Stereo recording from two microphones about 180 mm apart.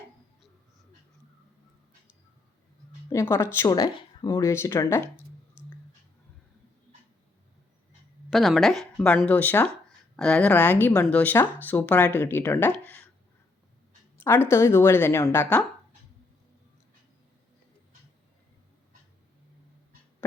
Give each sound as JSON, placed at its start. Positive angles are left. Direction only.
{"t": 3.1, "sound": "speech", "side_deg": 15}
{"t": 8.3, "sound": "speech", "side_deg": 0}
{"t": 14.3, "sound": "speech", "side_deg": 15}